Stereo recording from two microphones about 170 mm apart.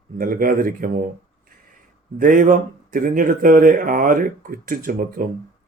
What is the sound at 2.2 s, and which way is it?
Speech, 55° right (ahead or behind).